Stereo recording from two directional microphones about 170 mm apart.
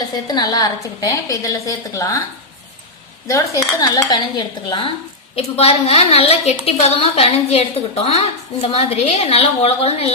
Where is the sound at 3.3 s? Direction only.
15° left (ahead or behind).